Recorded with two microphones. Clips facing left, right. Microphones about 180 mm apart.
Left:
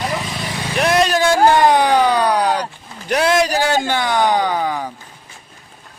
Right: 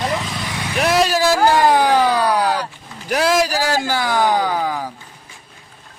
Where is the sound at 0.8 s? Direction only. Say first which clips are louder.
Left 1 dB; centre (ahead or behind).